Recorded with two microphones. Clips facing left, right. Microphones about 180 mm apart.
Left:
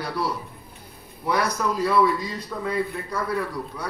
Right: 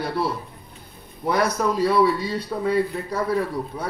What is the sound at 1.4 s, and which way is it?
Speech, 25° right (ahead or behind).